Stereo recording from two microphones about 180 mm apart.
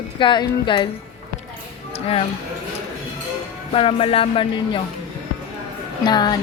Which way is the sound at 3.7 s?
35° left (ahead or behind).